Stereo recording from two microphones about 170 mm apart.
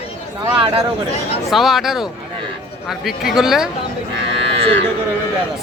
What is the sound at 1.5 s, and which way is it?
Speech, centre (ahead or behind).